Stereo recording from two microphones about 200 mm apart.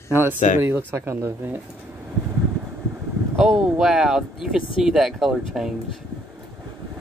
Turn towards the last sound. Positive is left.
turn(degrees=0)  # may be behind; listen again after turning